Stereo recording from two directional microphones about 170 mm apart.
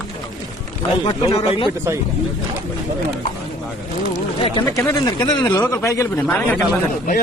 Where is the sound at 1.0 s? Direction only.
30° left (ahead or behind).